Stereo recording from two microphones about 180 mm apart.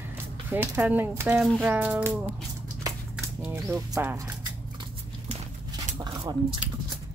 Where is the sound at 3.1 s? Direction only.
10° right (ahead or behind).